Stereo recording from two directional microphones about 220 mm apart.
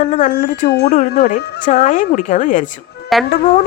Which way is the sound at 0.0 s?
40° left (ahead or behind).